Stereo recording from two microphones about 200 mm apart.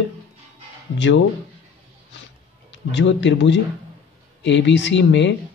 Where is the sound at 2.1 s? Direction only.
65° left (ahead or behind).